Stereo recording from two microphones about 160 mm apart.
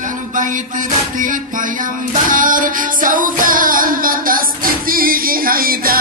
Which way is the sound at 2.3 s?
55° right (ahead or behind).